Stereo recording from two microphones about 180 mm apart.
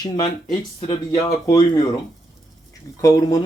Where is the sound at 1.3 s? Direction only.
20° left (ahead or behind).